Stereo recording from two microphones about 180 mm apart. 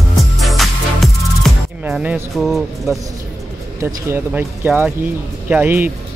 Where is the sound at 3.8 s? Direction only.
15° right (ahead or behind).